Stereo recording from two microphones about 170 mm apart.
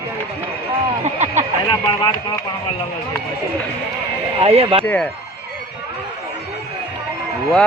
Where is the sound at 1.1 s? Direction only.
40° right (ahead or behind).